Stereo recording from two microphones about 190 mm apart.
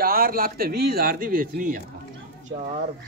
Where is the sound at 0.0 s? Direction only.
50° right (ahead or behind).